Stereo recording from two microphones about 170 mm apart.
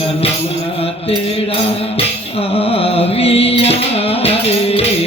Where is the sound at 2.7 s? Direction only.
35° left (ahead or behind).